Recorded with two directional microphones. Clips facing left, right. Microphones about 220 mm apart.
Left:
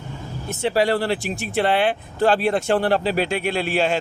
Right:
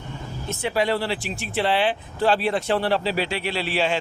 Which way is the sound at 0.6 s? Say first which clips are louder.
Left 4 dB; 35° left (ahead or behind).